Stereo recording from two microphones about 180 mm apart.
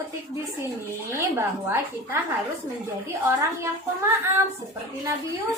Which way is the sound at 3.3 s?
15° right (ahead or behind).